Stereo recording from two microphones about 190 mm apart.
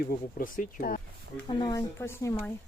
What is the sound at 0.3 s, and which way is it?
Speech, 45° left (ahead or behind).